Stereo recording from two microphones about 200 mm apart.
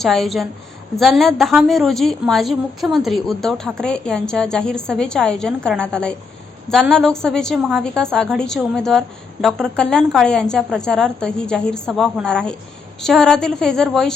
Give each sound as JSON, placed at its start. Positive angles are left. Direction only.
{"t": 0.0, "sound": "a woman's voice", "side_deg": 0}